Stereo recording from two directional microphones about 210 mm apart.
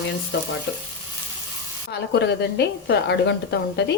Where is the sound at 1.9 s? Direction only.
50° left (ahead or behind).